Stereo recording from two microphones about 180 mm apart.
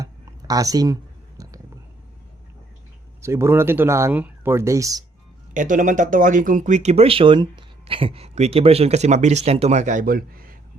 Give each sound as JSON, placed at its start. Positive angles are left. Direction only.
{"t": 0.0, "sound": "a sound", "side_deg": -20}
{"t": 1.4, "sound": "whispering", "side_deg": -20}
{"t": 3.2, "sound": "speech", "side_deg": -15}
{"t": 5.5, "sound": "speech", "side_deg": -45}